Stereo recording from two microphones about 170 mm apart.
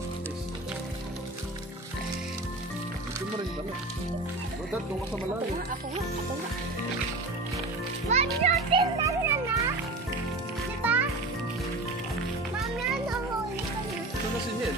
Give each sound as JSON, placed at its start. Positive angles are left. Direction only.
{"t": 8.1, "sound": "a child's voice", "side_deg": -40}
{"t": 9.0, "sound": "children playing", "side_deg": -15}
{"t": 10.8, "sound": "music", "side_deg": -10}